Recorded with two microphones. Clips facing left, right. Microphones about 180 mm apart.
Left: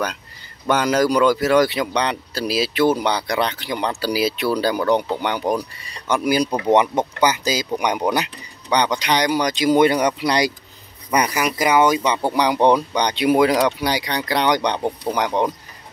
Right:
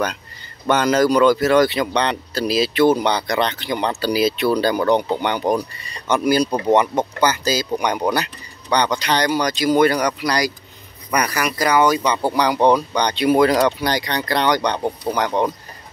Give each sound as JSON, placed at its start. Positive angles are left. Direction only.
{"t": 0.7, "sound": "speech", "side_deg": 10}